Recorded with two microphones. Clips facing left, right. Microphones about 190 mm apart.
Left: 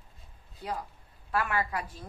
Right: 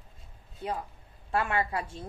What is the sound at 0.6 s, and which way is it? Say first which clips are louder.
A woman's voice: right 2 dB; 25° right (ahead or behind).